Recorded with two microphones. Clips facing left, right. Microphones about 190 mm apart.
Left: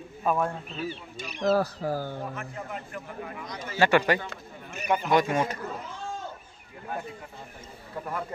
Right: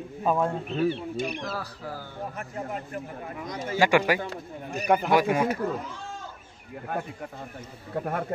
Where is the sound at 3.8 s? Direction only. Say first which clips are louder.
Even; 10° right (ahead or behind).